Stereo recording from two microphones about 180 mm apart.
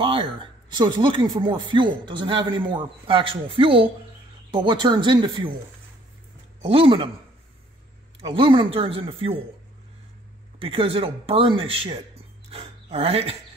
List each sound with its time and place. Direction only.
0.0 s speech: 30° right (ahead or behind)
6.6 s speech: 30° right (ahead or behind)
8.2 s speech: 30° right (ahead or behind)
10.6 s speech: 30° right (ahead or behind)